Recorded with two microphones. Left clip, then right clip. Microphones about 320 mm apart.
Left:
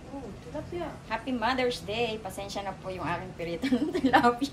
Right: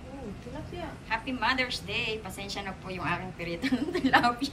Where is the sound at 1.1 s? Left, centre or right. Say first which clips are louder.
Right 1 dB; centre.